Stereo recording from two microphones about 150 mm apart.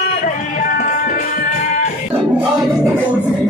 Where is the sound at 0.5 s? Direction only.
60° left (ahead or behind).